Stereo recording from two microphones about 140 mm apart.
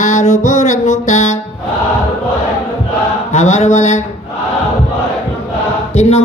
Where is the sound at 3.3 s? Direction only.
55° left (ahead or behind).